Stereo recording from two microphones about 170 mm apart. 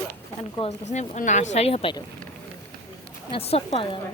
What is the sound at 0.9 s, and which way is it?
Speech, 45° left (ahead or behind).